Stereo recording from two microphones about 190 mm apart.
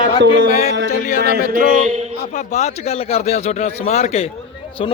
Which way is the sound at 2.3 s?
40° left (ahead or behind).